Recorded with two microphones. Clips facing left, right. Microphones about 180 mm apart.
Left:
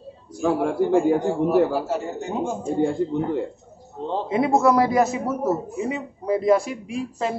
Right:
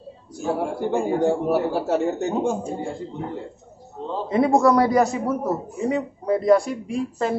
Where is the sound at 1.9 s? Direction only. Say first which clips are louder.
Right 5 dB; 70° right (ahead or behind).